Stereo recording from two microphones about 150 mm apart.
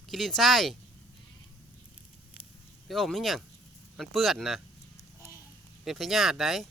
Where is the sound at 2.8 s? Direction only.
Centre (ahead or behind).